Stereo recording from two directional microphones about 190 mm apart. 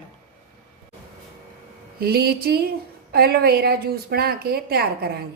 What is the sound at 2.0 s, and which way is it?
A woman's voice, 55° right (ahead or behind).